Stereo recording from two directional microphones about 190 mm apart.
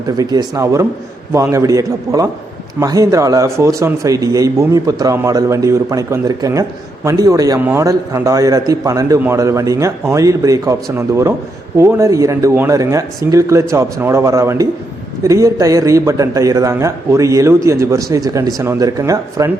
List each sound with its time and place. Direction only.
0.2 s speech: 20° right (ahead or behind)